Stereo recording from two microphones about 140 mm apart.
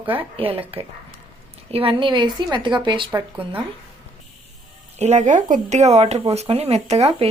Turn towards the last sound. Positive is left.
turn(degrees=-45)  # may be behind; listen again after turning